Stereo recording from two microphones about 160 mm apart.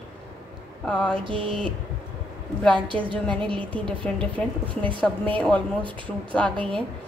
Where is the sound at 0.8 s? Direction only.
5° left (ahead or behind).